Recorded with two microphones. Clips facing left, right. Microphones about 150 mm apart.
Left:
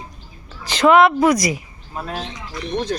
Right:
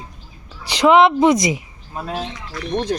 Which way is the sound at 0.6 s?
15° right (ahead or behind).